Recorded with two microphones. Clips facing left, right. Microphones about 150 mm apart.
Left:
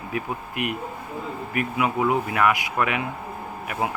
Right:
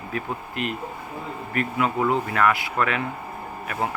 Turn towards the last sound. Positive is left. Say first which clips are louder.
# even
turn(degrees=15)  # may be behind; listen again after turning